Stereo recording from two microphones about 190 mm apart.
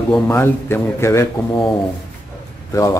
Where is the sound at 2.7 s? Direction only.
15° left (ahead or behind).